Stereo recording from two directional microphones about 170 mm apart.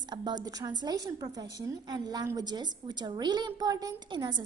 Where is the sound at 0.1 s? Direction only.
25° right (ahead or behind).